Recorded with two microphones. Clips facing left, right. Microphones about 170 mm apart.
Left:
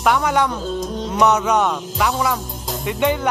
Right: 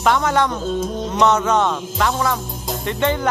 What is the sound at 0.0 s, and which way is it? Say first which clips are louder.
Speech: even; 10° left (ahead or behind).